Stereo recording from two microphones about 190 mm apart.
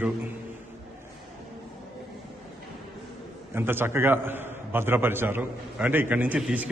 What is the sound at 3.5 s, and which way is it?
A man's voice, 10° right (ahead or behind).